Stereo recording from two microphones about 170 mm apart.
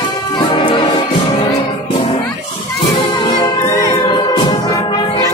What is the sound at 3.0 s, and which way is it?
Music, 25° left (ahead or behind).